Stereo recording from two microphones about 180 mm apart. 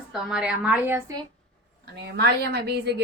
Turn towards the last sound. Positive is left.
turn(degrees=-70)  # may be behind; listen again after turning